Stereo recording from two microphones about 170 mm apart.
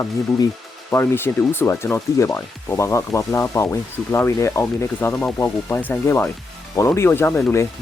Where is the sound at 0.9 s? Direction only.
15° left (ahead or behind).